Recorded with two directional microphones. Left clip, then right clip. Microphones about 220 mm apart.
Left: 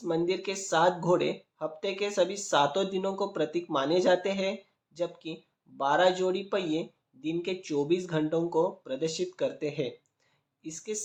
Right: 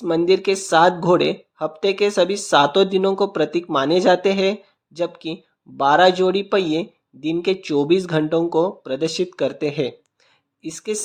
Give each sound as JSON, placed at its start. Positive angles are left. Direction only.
{"t": 0.0, "sound": "speech", "side_deg": -40}